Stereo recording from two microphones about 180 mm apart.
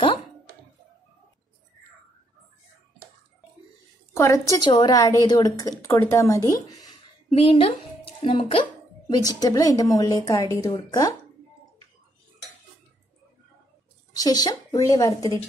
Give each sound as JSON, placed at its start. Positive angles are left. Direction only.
{"t": 4.1, "sound": "a woman's voice", "side_deg": 15}
{"t": 7.2, "sound": "speech", "side_deg": 30}
{"t": 14.1, "sound": "a woman's voice", "side_deg": 20}